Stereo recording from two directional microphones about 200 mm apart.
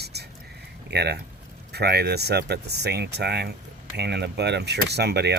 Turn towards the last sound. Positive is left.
turn(degrees=-55)  # may be behind; listen again after turning